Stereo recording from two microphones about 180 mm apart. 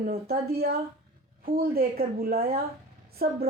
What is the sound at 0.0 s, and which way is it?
A woman's voice, 60° right (ahead or behind).